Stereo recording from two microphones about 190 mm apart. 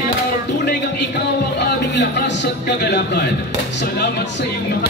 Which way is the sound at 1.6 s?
65° left (ahead or behind).